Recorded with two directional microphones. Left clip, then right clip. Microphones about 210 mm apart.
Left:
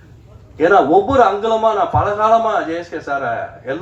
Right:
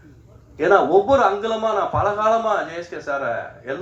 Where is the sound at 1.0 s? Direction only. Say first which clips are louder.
Left 4 dB; 55° right (ahead or behind).